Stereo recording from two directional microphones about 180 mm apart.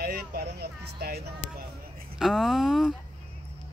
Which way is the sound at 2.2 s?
Centre (ahead or behind).